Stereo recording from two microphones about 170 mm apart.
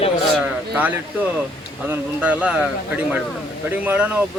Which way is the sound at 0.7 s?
10° right (ahead or behind).